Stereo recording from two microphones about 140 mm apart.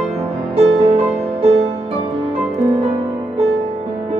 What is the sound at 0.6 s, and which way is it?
Music, 50° right (ahead or behind).